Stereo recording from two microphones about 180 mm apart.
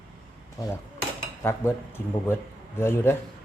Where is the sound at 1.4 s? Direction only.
15° left (ahead or behind).